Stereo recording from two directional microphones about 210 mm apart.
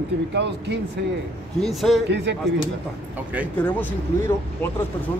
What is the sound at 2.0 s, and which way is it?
Speech, 55° right (ahead or behind).